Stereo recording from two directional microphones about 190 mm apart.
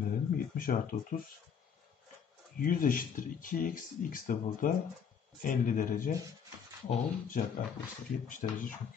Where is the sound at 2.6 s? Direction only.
45° left (ahead or behind).